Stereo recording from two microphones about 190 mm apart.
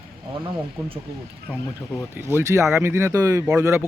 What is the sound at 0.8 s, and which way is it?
Speech, 15° right (ahead or behind).